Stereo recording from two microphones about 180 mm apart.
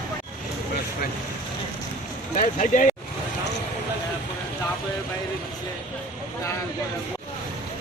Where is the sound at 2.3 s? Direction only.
45° left (ahead or behind).